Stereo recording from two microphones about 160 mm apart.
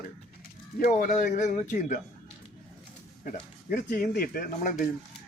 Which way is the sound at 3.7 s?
60° left (ahead or behind).